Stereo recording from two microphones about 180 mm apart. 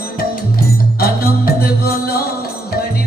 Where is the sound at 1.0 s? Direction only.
55° left (ahead or behind).